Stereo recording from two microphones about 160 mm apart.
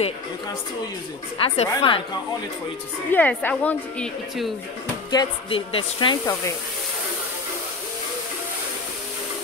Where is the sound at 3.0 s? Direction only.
10° left (ahead or behind).